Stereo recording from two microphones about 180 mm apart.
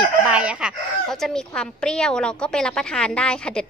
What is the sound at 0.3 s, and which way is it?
Speech, 5° right (ahead or behind).